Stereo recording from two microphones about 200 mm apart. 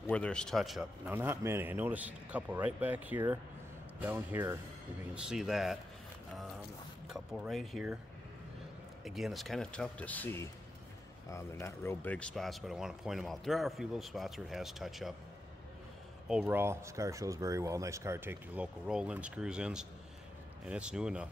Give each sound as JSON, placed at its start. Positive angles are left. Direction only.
{"t": 0.0, "sound": "speech", "side_deg": 5}
{"t": 7.1, "sound": "speech", "side_deg": 0}
{"t": 9.0, "sound": "speech", "side_deg": 0}
{"t": 16.3, "sound": "speech", "side_deg": -5}